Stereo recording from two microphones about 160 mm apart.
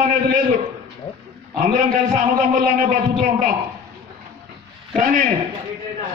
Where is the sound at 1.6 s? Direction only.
55° right (ahead or behind).